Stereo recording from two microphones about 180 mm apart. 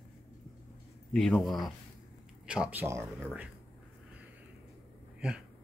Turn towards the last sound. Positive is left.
turn(degrees=-5)  # may be behind; listen again after turning